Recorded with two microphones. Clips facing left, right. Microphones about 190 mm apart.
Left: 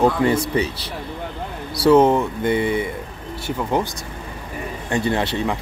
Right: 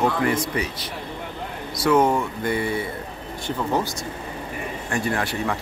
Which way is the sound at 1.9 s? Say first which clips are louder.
Left 5 dB; 20° left (ahead or behind).